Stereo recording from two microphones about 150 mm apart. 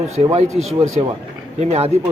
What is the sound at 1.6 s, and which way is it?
Speech, 45° right (ahead or behind).